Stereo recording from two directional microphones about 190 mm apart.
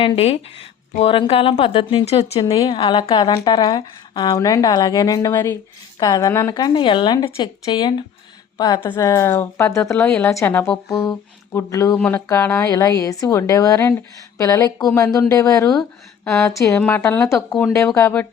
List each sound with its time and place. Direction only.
0.0 s a woman's voice: 30° left (ahead or behind)
2.4 s a woman's voice: 20° left (ahead or behind)
15.8 s speech: centre (ahead or behind)
16.4 s a woman's voice: 15° left (ahead or behind)